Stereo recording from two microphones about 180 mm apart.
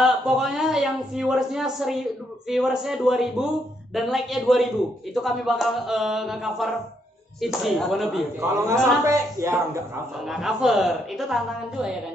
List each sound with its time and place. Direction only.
0.0 s a woman's voice: centre (ahead or behind)
8.4 s a man's voice: 15° right (ahead or behind)
10.2 s a woman's voice: centre (ahead or behind)